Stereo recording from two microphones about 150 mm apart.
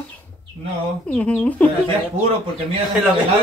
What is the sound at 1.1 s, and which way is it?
Speech, 5° left (ahead or behind).